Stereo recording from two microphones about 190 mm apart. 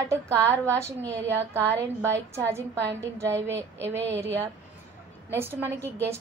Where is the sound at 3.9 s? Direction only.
70° right (ahead or behind).